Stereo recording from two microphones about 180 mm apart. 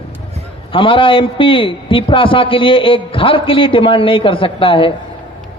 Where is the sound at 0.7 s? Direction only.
30° left (ahead or behind).